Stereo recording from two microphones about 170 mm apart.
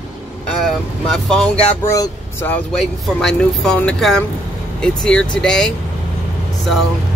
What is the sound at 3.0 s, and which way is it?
Speech, 5° left (ahead or behind).